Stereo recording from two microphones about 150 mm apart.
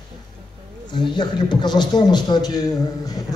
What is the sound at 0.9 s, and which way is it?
A man's voice, 30° left (ahead or behind).